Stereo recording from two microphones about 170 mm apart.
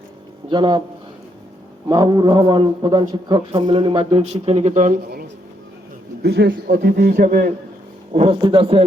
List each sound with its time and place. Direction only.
0.5 s a man's voice: 25° right (ahead or behind)
1.9 s a man's voice: 25° right (ahead or behind); by 4.9 s 45° right (ahead or behind)
6.2 s speech: 75° right (ahead or behind)
6.7 s a man's voice: 55° right (ahead or behind)
8.1 s a man's voice: 30° right (ahead or behind)